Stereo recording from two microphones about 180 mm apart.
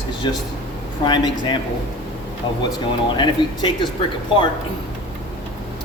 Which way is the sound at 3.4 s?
25° left (ahead or behind).